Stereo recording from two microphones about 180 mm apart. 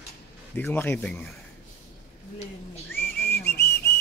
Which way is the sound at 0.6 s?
10° left (ahead or behind).